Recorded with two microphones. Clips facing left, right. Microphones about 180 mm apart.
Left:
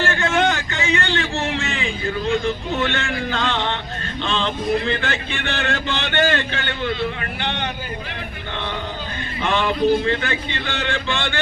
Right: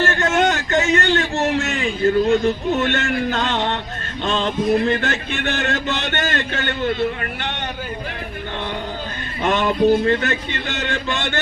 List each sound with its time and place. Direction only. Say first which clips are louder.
0.0 s a sound: right 2 dB; 40° right (ahead or behind)
4.2 s music: right 3 dB; 45° right (ahead or behind)
9.4 s music: right 2 dB; 45° right (ahead or behind)